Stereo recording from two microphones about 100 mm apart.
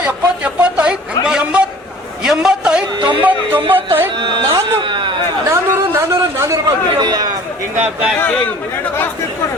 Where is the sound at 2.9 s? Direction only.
45° right (ahead or behind).